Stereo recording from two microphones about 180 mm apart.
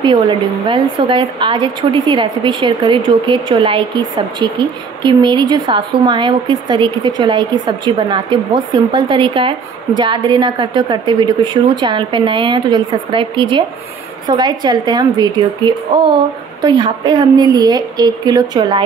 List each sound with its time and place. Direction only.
0.0 s a woman's voice: 25° right (ahead or behind)